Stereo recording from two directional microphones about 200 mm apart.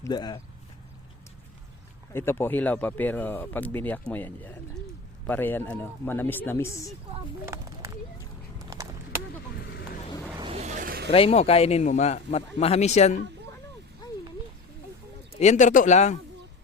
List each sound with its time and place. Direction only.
0.0 s speech: 20° left (ahead or behind)
2.1 s speech: 10° left (ahead or behind)
7.5 s speech: 15° right (ahead or behind)
8.7 s a sound: 20° right (ahead or behind)
10.3 s vehicle: 25° right (ahead or behind); by 11.1 s 50° right (ahead or behind)
11.1 s speech: 30° left (ahead or behind)
14.0 s a sound: 20° left (ahead or behind)
15.4 s speech: 35° left (ahead or behind)